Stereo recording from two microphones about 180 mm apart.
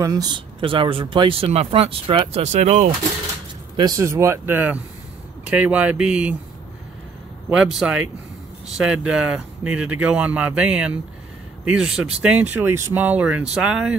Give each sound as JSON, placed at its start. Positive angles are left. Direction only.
{"t": 0.0, "sound": "speech", "side_deg": -20}
{"t": 3.7, "sound": "speech", "side_deg": -20}
{"t": 7.4, "sound": "speech", "side_deg": -5}